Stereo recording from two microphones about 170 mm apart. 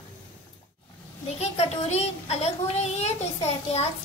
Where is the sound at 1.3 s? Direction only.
40° left (ahead or behind).